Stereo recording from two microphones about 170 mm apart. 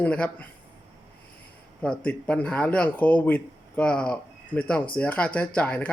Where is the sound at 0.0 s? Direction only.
10° left (ahead or behind).